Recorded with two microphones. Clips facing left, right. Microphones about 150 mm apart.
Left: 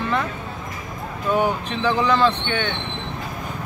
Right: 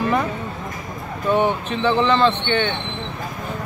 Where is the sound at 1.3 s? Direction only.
5° left (ahead or behind).